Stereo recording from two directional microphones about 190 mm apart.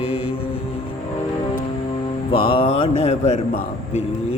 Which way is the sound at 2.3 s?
30° left (ahead or behind).